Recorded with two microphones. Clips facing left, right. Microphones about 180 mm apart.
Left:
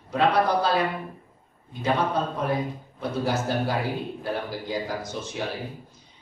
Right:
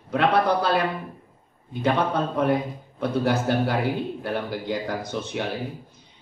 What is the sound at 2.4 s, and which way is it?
A man's voice, 60° right (ahead or behind).